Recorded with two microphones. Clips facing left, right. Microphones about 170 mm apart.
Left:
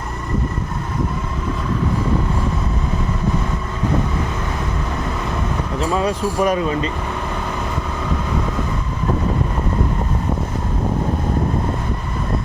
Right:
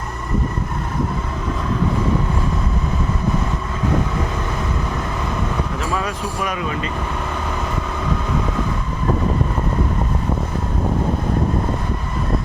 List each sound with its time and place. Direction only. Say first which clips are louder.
6.0 s speech: left 6 dB; 35° left (ahead or behind)